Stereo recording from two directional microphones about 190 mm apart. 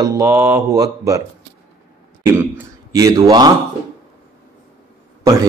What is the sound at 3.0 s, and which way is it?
Speech, 20° right (ahead or behind).